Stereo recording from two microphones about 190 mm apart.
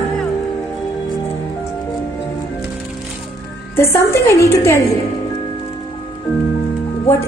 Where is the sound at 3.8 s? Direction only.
15° left (ahead or behind).